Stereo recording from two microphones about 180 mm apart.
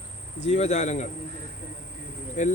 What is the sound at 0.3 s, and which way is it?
Speech, 40° left (ahead or behind).